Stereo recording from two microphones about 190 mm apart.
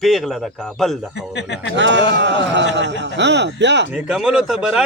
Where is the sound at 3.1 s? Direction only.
65° right (ahead or behind).